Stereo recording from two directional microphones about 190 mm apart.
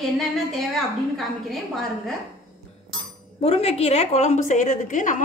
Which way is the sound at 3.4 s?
30° left (ahead or behind).